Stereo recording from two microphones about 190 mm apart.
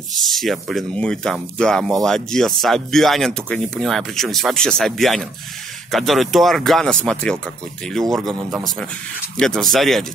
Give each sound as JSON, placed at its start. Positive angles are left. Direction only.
{"t": 0.2, "sound": "speech", "side_deg": 0}